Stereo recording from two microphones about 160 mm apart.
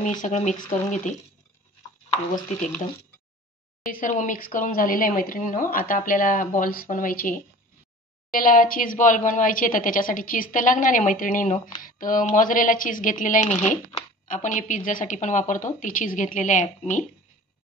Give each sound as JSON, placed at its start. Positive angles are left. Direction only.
{"t": 0.2, "sound": "speech", "side_deg": 45}
{"t": 3.9, "sound": "speech", "side_deg": 55}